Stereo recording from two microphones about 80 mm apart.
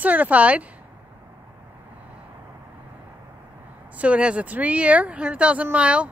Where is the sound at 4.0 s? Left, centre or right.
Centre.